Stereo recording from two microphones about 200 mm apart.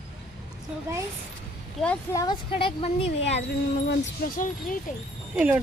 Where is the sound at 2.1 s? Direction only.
15° left (ahead or behind).